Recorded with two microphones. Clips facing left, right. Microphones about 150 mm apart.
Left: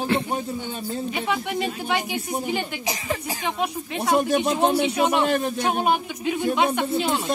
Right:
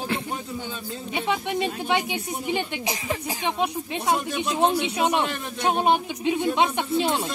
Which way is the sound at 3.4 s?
25° right (ahead or behind).